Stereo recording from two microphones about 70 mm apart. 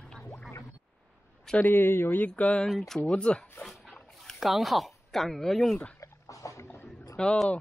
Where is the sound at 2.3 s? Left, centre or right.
Centre.